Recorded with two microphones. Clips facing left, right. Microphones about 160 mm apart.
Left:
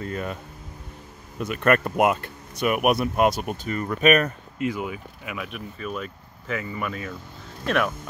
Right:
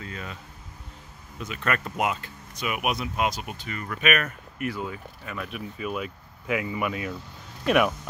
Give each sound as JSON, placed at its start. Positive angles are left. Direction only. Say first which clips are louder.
{"t": 0.0, "sound": "speech", "louder": "left 8 dB", "side_deg": 50}
{"t": 1.4, "sound": "speech", "louder": "left 8 dB", "side_deg": 55}
{"t": 3.6, "sound": "speech", "louder": "left 7 dB", "side_deg": 35}
{"t": 4.6, "sound": "speech", "louder": "left 3 dB", "side_deg": 15}
{"t": 5.8, "sound": "speech", "louder": "right 1 dB", "side_deg": -5}